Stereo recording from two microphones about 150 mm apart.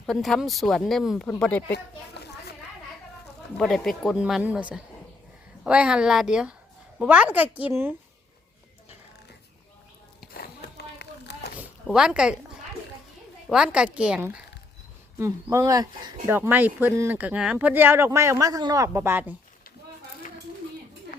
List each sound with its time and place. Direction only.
0.0 s speech: centre (ahead or behind)
1.7 s speech: 90° left
3.6 s speech: centre (ahead or behind); by 7.9 s 15° right (ahead or behind)
10.3 s a sound: 90° left
11.5 s a sound: 5° right (ahead or behind)
13.5 s speech: 5° right (ahead or behind); by 16.3 s 25° right (ahead or behind)
16.3 s speech: 15° right (ahead or behind)